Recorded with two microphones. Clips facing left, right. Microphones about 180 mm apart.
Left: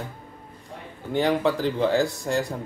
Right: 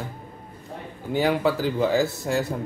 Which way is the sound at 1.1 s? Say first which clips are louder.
Even; 5° right (ahead or behind).